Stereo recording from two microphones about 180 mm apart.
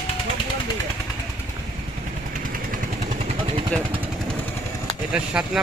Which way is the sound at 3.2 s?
30° right (ahead or behind).